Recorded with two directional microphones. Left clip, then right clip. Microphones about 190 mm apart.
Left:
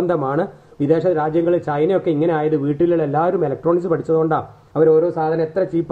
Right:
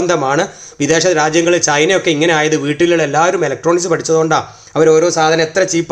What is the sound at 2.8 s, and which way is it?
Speech, centre (ahead or behind).